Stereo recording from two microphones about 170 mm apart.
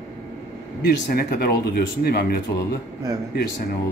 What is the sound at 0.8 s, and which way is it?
Speech, 65° left (ahead or behind).